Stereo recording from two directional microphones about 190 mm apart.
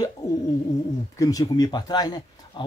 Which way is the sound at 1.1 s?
20° left (ahead or behind).